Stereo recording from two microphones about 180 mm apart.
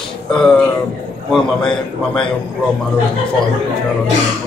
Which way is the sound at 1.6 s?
25° left (ahead or behind).